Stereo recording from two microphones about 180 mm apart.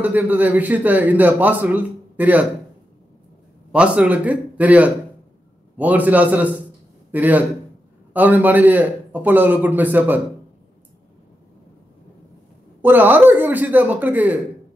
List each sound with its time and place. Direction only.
0.0 s a man's voice: 10° right (ahead or behind)
3.7 s a man's voice: 5° right (ahead or behind)
12.8 s a man's voice: 10° right (ahead or behind)